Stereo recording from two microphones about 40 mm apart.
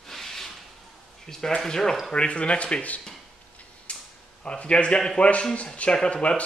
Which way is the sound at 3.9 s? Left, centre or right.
Left.